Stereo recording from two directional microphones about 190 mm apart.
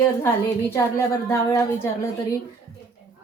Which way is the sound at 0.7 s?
15° left (ahead or behind).